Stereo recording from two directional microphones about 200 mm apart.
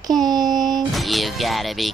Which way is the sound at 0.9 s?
Centre (ahead or behind).